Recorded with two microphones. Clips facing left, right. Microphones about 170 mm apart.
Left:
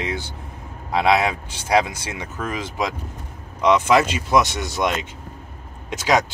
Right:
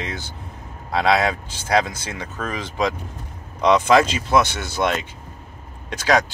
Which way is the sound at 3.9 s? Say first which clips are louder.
Right 1 dB; 10° left (ahead or behind).